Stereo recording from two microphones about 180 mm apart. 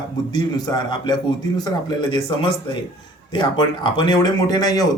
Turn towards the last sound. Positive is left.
turn(degrees=20)  # may be behind; listen again after turning